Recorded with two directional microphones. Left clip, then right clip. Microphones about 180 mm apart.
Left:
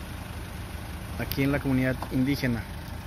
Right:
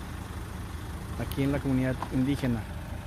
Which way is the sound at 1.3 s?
Centre (ahead or behind).